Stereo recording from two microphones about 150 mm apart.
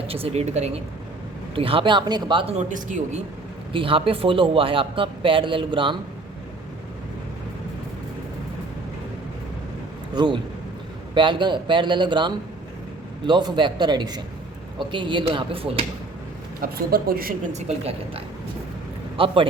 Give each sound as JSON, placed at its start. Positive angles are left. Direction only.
{"t": 0.1, "sound": "speech", "side_deg": -45}
{"t": 2.6, "sound": "speech", "side_deg": -55}
{"t": 3.7, "sound": "speech", "side_deg": -35}
{"t": 10.2, "sound": "a man's voice", "side_deg": -30}
{"t": 16.6, "sound": "speech", "side_deg": -80}
{"t": 17.5, "sound": "speech", "side_deg": -40}